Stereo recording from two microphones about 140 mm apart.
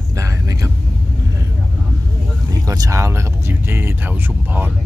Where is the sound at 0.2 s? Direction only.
20° right (ahead or behind).